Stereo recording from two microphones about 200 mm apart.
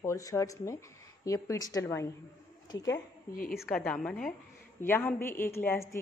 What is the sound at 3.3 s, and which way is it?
Speech, 45° left (ahead or behind).